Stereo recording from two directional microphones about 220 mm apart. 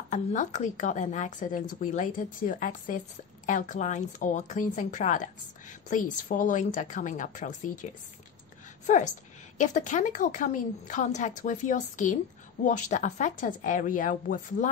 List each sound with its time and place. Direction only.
0.1 s a woman's voice: 35° left (ahead or behind)
8.8 s a woman's voice: 35° left (ahead or behind)